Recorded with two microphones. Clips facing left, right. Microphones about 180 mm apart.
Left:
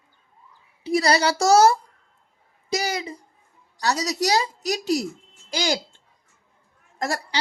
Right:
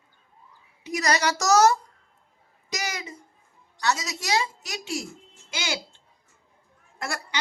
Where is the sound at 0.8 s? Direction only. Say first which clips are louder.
Left 5 dB; 30° left (ahead or behind).